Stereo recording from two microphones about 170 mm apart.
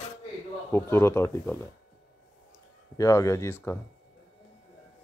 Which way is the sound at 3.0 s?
20° left (ahead or behind).